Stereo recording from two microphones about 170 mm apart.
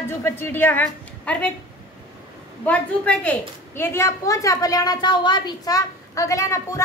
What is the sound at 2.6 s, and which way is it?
A woman's voice, 10° left (ahead or behind).